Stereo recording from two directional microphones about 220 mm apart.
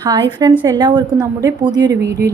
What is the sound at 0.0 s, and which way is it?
A woman's voice, 20° right (ahead or behind).